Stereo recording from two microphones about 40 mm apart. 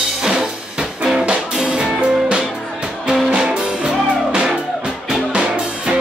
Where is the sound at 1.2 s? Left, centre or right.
Right.